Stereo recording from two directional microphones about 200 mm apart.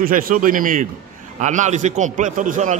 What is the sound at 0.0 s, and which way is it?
A man's voice, 45° right (ahead or behind).